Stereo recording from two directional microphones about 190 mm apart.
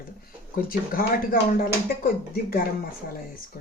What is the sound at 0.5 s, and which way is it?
Speech, 50° left (ahead or behind).